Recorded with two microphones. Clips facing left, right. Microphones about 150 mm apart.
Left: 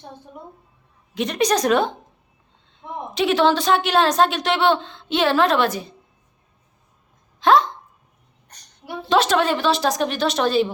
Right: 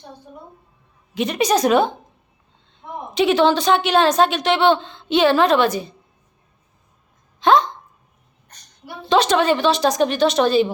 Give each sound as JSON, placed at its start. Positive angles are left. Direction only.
{"t": 1.1, "sound": "a woman's voice", "side_deg": -5}
{"t": 3.2, "sound": "a woman's voice", "side_deg": 0}
{"t": 7.3, "sound": "hiccup", "side_deg": 0}
{"t": 9.0, "sound": "a woman's voice", "side_deg": 5}